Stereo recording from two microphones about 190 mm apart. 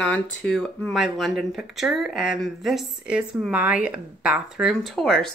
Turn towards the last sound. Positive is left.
turn(degrees=0)  # may be behind; listen again after turning